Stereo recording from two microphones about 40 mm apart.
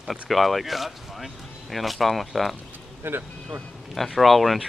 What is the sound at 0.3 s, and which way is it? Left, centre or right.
Speech, centre.